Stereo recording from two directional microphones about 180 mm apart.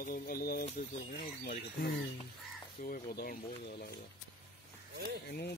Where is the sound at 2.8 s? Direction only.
55° left (ahead or behind).